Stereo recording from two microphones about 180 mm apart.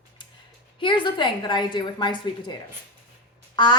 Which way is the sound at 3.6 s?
25° left (ahead or behind).